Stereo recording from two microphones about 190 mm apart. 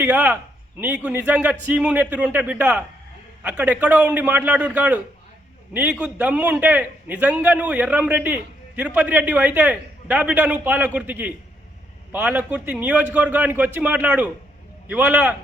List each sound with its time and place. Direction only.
0.0 s a man's voice: 10° right (ahead or behind)